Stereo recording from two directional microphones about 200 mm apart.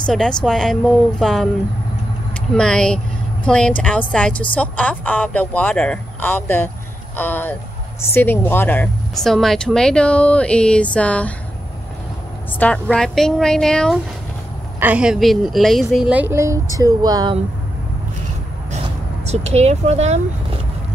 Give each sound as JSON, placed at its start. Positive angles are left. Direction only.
{"t": 0.0, "sound": "speech", "side_deg": 5}
{"t": 2.5, "sound": "a woman's voice", "side_deg": 5}
{"t": 12.5, "sound": "speech", "side_deg": 5}
{"t": 16.7, "sound": "music", "side_deg": -20}
{"t": 19.2, "sound": "speech", "side_deg": -30}